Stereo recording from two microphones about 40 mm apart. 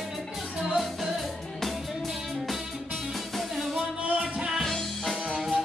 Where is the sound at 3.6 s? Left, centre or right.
Centre.